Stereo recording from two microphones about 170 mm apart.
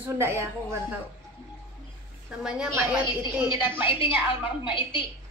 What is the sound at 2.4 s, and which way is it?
Speech, 5° right (ahead or behind).